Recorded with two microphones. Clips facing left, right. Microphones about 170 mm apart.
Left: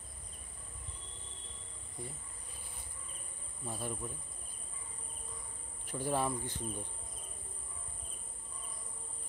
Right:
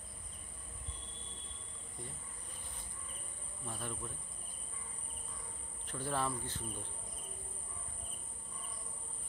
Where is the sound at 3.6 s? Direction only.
10° left (ahead or behind).